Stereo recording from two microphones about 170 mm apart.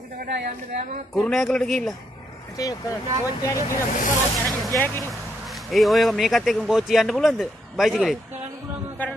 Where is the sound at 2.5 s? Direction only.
20° left (ahead or behind).